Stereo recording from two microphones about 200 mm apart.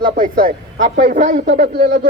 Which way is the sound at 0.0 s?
45° right (ahead or behind).